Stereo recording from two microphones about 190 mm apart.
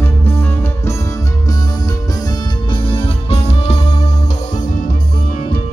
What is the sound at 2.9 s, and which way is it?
Music, 30° left (ahead or behind).